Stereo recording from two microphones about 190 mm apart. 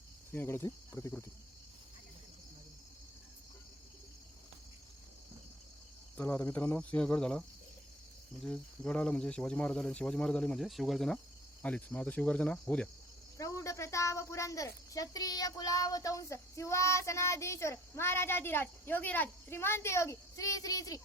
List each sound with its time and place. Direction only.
0.3 s a woman's voice: 10° left (ahead or behind)
6.1 s a woman's voice: 10° left (ahead or behind)
8.4 s a woman's voice: 5° left (ahead or behind)